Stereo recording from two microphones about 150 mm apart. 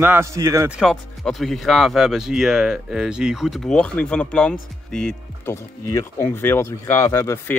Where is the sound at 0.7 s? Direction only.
Centre (ahead or behind).